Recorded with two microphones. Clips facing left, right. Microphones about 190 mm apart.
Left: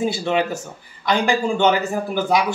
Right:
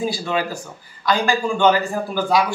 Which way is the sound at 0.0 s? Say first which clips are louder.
Left 2 dB; 25° left (ahead or behind).